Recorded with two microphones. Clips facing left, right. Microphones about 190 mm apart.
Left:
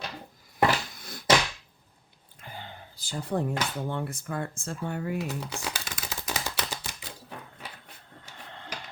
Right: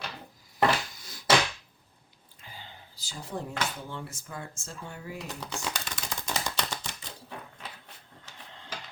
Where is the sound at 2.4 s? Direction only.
55° left (ahead or behind).